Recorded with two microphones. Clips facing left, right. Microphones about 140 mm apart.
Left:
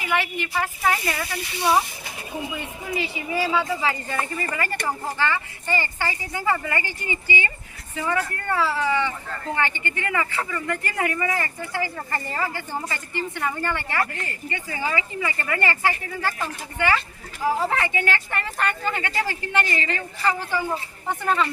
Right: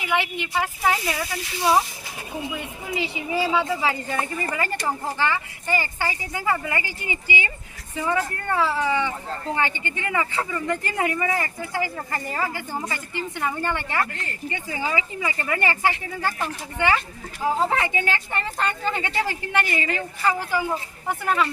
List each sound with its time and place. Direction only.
0.1 s speech: 15° right (ahead or behind)
2.9 s speech: 15° right (ahead or behind)